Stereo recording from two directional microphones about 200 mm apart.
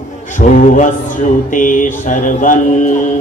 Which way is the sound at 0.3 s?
40° left (ahead or behind).